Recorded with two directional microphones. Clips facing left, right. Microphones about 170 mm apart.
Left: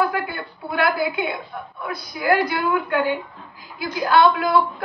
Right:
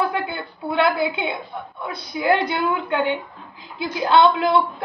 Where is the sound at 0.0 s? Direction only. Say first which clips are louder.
Left 1 dB; 25° right (ahead or behind).